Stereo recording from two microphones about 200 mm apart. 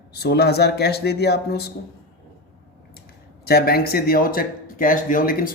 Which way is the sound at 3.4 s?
50° left (ahead or behind).